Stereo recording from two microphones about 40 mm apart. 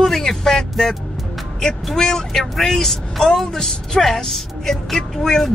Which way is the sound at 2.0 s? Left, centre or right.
Centre.